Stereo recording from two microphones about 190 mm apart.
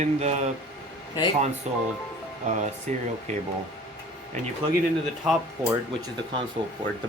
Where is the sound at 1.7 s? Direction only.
35° right (ahead or behind).